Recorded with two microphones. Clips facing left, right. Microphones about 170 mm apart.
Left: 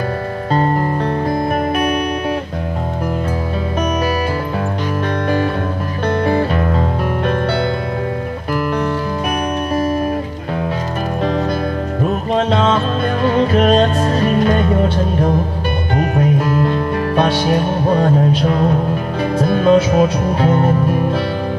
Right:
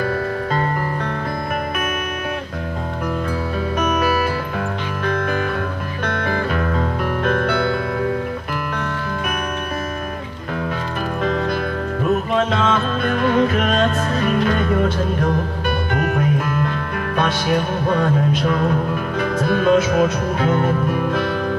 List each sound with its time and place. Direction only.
6.0 s music: 30° left (ahead or behind)
12.4 s music: 30° left (ahead or behind)
15.9 s music: 35° left (ahead or behind)